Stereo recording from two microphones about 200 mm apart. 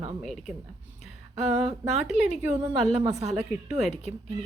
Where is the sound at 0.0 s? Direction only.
30° right (ahead or behind).